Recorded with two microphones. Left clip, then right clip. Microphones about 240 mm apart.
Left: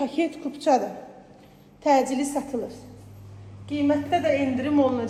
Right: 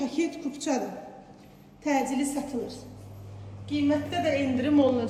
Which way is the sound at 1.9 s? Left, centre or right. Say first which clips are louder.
Left 6 dB; centre.